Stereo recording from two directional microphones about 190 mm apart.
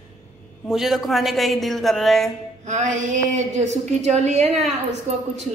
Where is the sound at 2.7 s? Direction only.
40° right (ahead or behind).